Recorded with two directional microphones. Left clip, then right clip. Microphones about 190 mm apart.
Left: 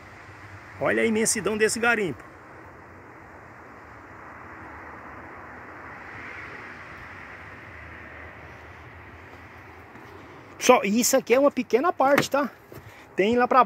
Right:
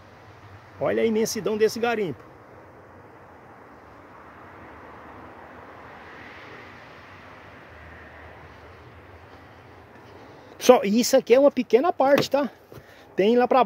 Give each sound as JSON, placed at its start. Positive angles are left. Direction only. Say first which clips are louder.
{"t": 0.7, "sound": "speech", "louder": "right 1 dB", "side_deg": -15}
{"t": 10.6, "sound": "speech", "louder": "right 2 dB", "side_deg": -35}